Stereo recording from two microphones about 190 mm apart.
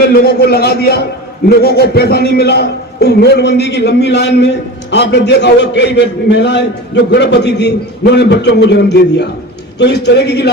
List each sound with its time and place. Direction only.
0.0 s a man's voice: 55° left (ahead or behind)